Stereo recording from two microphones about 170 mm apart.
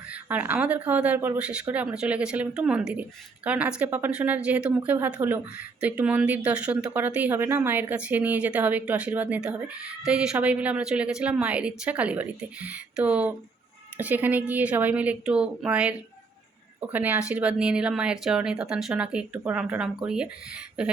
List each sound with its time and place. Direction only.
0.1 s speech: 10° right (ahead or behind)